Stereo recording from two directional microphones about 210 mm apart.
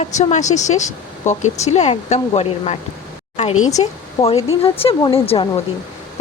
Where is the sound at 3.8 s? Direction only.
30° left (ahead or behind).